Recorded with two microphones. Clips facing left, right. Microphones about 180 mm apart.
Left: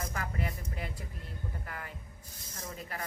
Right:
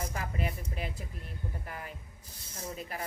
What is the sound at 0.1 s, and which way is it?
A woman's voice, 25° right (ahead or behind).